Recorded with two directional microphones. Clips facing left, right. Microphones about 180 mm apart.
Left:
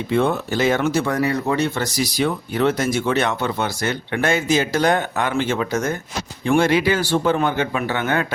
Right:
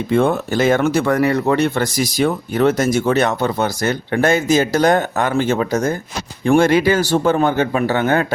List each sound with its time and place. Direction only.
0.1 s speech: 50° right (ahead or behind)
6.4 s speech: 45° right (ahead or behind)